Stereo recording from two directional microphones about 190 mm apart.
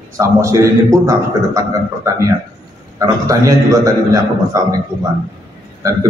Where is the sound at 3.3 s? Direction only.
15° right (ahead or behind).